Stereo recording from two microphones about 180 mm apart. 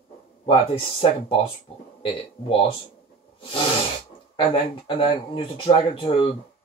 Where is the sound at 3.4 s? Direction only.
30° left (ahead or behind).